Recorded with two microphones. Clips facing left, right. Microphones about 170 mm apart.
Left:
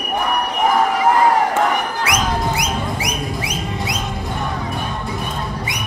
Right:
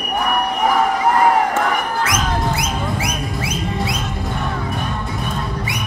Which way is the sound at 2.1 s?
15° left (ahead or behind).